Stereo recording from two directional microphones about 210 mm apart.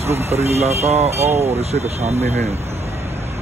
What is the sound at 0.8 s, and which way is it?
Speech, 30° right (ahead or behind).